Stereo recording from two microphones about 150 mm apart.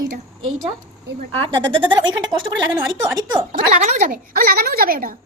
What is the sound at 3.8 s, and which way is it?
Speech, 50° right (ahead or behind).